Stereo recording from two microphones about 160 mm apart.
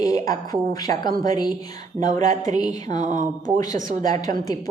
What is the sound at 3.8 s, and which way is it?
Speech, 55° right (ahead or behind).